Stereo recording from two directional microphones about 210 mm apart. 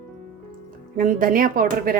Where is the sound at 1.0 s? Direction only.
40° right (ahead or behind).